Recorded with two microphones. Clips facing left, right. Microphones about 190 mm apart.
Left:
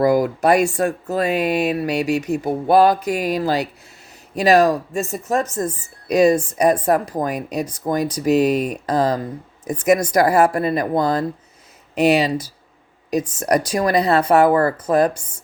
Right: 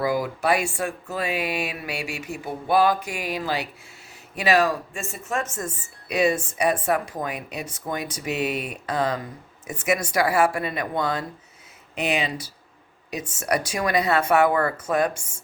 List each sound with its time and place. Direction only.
0.0 s speech: 45° left (ahead or behind)